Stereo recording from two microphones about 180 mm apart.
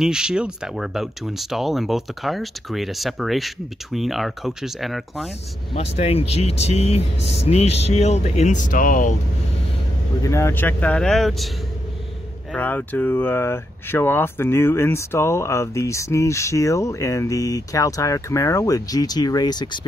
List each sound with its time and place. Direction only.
0.0 s speech: 5° right (ahead or behind)
5.8 s speech: 35° left (ahead or behind)
7.2 s speech: 75° left (ahead or behind)
7.4 s speech: 35° left (ahead or behind)
10.2 s speech: 15° left (ahead or behind)
12.5 s speech: 10° left (ahead or behind)